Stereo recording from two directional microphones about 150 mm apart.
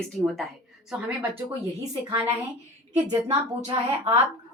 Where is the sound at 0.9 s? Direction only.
10° right (ahead or behind).